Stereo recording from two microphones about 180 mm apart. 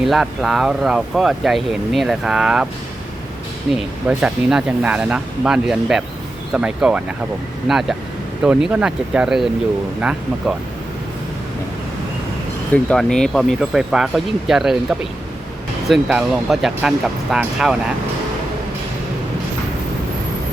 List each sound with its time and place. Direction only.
0.0 s speech: centre (ahead or behind)
4.0 s speech: 5° right (ahead or behind)
12.7 s speech: 5° left (ahead or behind)